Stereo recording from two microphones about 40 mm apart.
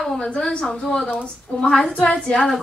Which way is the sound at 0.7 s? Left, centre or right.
Left.